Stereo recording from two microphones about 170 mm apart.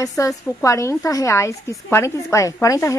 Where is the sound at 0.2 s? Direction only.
15° left (ahead or behind).